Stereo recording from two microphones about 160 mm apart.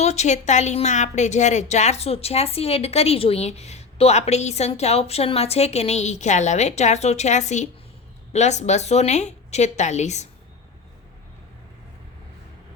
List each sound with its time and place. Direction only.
0.0 s a woman's voice: 45° left (ahead or behind)